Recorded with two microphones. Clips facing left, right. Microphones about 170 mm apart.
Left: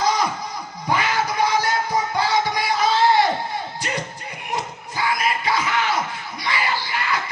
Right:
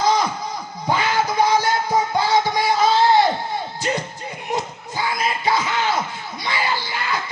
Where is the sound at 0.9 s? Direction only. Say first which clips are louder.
Right 2 dB; 25° right (ahead or behind).